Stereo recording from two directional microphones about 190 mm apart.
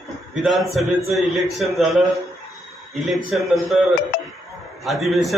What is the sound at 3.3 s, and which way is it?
Speech, centre (ahead or behind).